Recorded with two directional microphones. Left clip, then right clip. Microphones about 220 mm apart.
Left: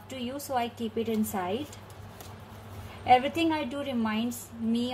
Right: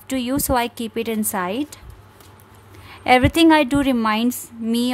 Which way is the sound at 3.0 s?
45° right (ahead or behind).